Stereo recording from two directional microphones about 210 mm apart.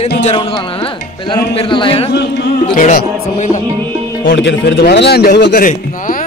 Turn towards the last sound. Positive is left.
turn(degrees=40)  # may be behind; listen again after turning